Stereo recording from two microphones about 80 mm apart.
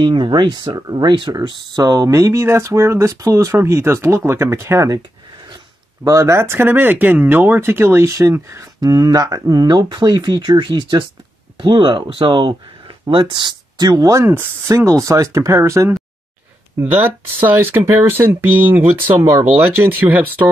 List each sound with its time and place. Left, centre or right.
0.0 s speech: right
0.7 s speech: right
1.3 s speech: right
6.0 s speech: right
8.8 s speech: right
11.5 s speech: right
14.2 s speech: right
16.7 s speech: right